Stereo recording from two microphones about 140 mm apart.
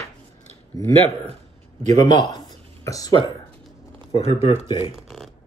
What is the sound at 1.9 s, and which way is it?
Speech, 25° left (ahead or behind).